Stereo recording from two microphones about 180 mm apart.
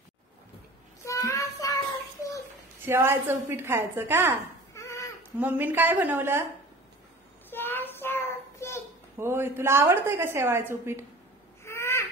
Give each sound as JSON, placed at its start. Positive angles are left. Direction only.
{"t": 1.0, "sound": "child singing", "side_deg": 15}
{"t": 2.8, "sound": "a woman's voice", "side_deg": -15}
{"t": 4.7, "sound": "a sound", "side_deg": 15}
{"t": 5.4, "sound": "a woman's voice", "side_deg": -10}
{"t": 7.4, "sound": "child singing", "side_deg": 10}
{"t": 9.2, "sound": "a woman's voice", "side_deg": -15}
{"t": 11.6, "sound": "owl", "side_deg": 15}